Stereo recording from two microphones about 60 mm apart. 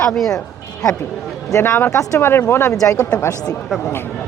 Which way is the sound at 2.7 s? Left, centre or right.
Left.